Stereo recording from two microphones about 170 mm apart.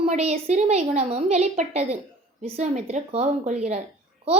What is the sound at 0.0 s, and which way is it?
A child's voice, 40° right (ahead or behind).